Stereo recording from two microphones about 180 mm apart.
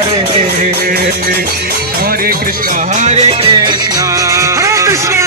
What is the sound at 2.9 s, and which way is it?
Music, 40° right (ahead or behind).